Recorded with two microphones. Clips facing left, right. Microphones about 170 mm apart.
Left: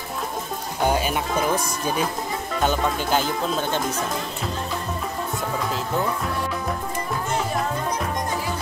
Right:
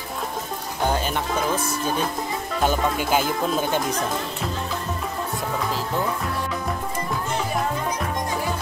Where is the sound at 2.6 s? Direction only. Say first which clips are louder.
Right 1 dB; 5° right (ahead or behind).